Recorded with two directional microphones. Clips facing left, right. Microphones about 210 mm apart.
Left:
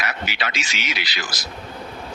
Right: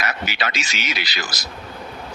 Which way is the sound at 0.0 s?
40° right (ahead or behind).